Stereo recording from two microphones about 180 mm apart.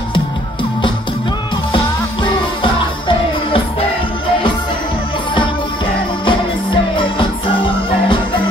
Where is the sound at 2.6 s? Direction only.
30° left (ahead or behind).